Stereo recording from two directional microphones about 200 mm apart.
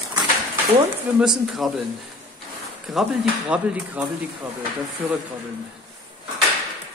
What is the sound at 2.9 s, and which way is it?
Speech, 5° right (ahead or behind).